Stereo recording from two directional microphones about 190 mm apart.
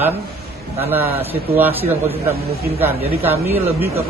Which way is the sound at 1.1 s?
30° right (ahead or behind).